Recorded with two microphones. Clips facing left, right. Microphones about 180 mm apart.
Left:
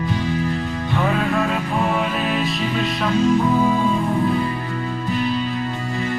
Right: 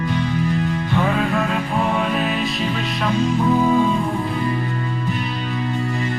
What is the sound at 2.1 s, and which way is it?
Music, centre (ahead or behind).